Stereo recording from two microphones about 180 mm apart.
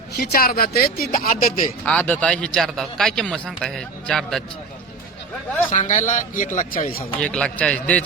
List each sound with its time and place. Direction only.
0.2 s speech: 60° left (ahead or behind)
1.8 s a man's voice: 10° left (ahead or behind)
5.7 s a man's voice: 45° left (ahead or behind)
7.2 s a man's voice: 5° left (ahead or behind)